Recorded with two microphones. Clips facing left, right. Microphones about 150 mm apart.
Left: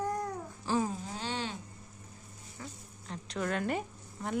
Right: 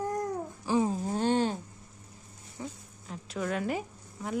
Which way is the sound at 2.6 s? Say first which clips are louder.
Right 6 dB; 20° right (ahead or behind).